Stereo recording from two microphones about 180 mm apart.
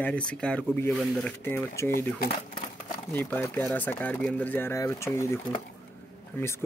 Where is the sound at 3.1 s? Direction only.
10° left (ahead or behind).